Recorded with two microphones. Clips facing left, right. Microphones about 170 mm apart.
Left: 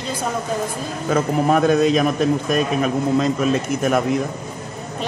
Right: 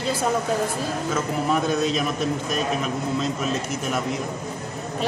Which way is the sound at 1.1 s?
60° left (ahead or behind).